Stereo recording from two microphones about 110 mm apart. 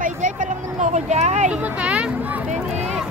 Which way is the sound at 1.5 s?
10° right (ahead or behind).